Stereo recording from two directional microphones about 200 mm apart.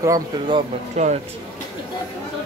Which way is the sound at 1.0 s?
35° right (ahead or behind).